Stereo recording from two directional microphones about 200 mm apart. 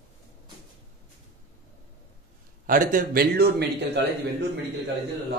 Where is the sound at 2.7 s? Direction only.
45° right (ahead or behind).